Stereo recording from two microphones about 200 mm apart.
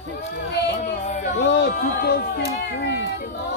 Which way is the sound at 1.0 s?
40° left (ahead or behind).